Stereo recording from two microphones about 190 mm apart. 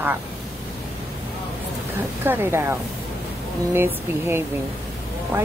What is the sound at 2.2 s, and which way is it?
A woman's voice, 10° right (ahead or behind).